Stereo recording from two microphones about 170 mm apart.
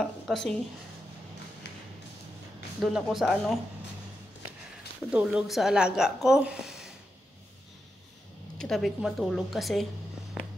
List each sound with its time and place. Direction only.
0.0 s speech: 5° left (ahead or behind)
1.6 s a sound: 80° left
2.8 s a woman's voice: centre (ahead or behind)
5.1 s a woman's voice: 5° right (ahead or behind)
8.5 s a woman's voice: centre (ahead or behind)